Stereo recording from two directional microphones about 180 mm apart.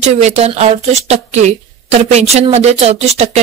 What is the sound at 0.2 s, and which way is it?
Speech, 35° right (ahead or behind).